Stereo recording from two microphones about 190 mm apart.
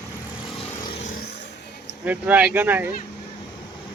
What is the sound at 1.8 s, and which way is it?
Speech, 10° right (ahead or behind).